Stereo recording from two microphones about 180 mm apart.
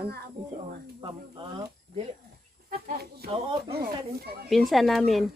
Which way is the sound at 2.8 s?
60° right (ahead or behind).